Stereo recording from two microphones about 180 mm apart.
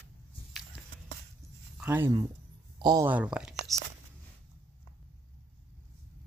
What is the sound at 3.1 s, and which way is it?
Speech, 5° right (ahead or behind).